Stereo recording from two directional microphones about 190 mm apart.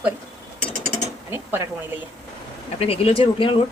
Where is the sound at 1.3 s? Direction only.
10° right (ahead or behind).